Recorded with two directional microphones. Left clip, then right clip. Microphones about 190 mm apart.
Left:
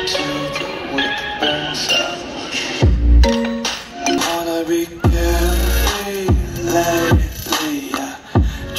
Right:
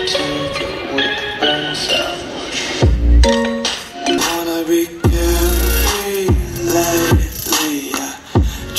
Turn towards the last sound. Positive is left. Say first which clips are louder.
# right 2 dB
turn(degrees=-5)  # may be behind; listen again after turning